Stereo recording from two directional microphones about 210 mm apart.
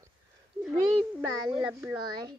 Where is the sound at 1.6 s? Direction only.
10° right (ahead or behind).